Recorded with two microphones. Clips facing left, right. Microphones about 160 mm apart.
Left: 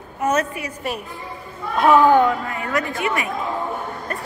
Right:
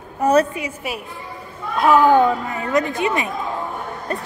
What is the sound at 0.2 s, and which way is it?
Speech, 35° right (ahead or behind).